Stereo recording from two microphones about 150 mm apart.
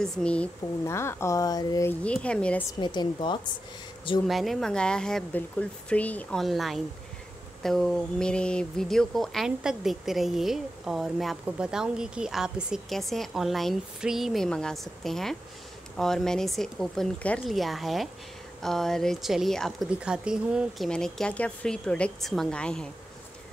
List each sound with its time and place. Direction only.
0.0 s speech: 5° left (ahead or behind)
0.8 s speech: 20° left (ahead or behind)
1.9 s speech: 10° left (ahead or behind)
2.8 s speech: 30° left (ahead or behind)
4.3 s a woman's voice: centre (ahead or behind)